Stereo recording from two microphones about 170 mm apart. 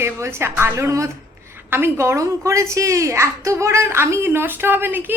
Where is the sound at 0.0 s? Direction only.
15° right (ahead or behind).